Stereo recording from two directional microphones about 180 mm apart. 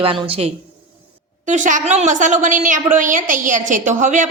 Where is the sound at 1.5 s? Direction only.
45° right (ahead or behind).